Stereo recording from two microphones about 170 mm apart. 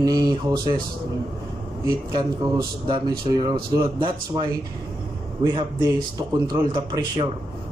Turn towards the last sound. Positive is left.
turn(degrees=-25)  # may be behind; listen again after turning